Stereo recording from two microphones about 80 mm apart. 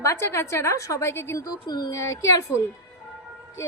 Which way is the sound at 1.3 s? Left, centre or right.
Left.